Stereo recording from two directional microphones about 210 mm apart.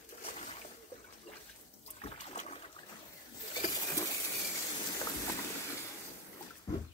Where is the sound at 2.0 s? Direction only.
30° left (ahead or behind).